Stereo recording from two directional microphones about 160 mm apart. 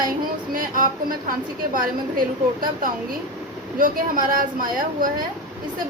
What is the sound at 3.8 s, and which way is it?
A woman's voice, 60° right (ahead or behind).